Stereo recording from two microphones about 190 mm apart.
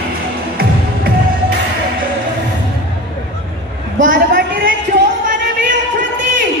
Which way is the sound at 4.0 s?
45° right (ahead or behind).